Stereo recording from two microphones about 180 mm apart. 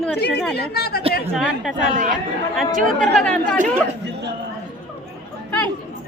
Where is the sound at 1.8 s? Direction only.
50° right (ahead or behind).